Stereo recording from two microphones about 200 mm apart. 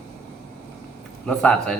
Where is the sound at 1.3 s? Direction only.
5° left (ahead or behind).